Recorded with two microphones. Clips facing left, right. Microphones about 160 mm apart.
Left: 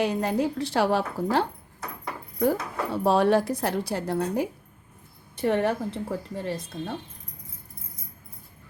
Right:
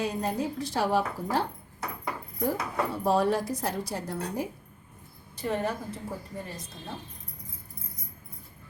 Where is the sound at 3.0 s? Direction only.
80° left.